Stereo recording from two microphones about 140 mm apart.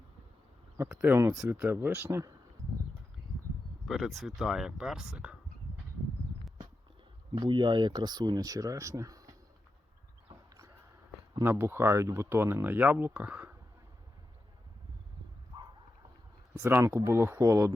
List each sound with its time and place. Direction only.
0.8 s speech: 15° right (ahead or behind)
3.8 s speech: centre (ahead or behind)
7.3 s speech: 35° right (ahead or behind)
11.4 s speech: 15° right (ahead or behind)
16.6 s speech: 20° right (ahead or behind)